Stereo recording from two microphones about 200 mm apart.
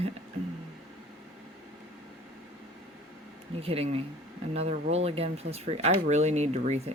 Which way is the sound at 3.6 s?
30° right (ahead or behind).